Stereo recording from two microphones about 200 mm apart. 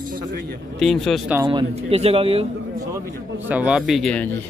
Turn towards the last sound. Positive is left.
turn(degrees=0)  # may be behind; listen again after turning